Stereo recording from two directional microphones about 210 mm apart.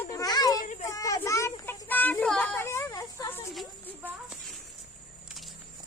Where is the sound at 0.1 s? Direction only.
15° left (ahead or behind).